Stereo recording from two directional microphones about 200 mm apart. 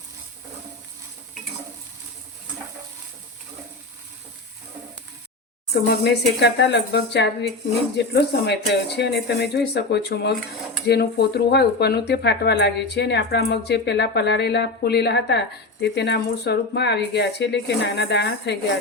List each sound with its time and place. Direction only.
5.9 s speech: 55° left (ahead or behind)